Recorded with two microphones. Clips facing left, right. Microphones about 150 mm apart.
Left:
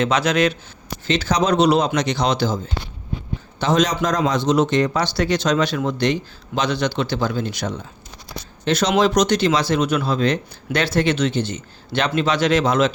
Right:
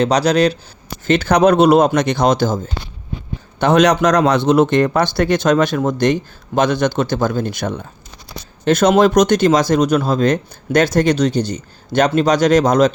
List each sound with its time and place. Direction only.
0.0 s speech: 35° right (ahead or behind)
1.0 s speech: 55° right (ahead or behind)
3.6 s speech: 65° right (ahead or behind); by 12.9 s 40° right (ahead or behind)